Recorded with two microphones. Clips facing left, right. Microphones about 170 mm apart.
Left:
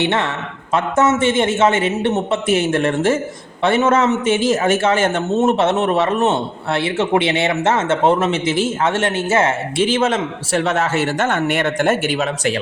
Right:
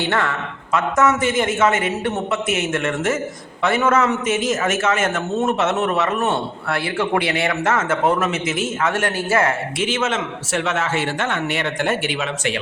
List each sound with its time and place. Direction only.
0.0 s a man's voice: 20° left (ahead or behind); by 12.5 s 40° left (ahead or behind)